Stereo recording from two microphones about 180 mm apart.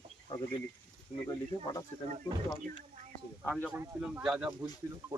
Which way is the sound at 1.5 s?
30° left (ahead or behind).